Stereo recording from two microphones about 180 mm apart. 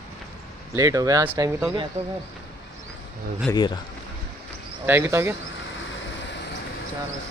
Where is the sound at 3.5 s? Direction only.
25° left (ahead or behind).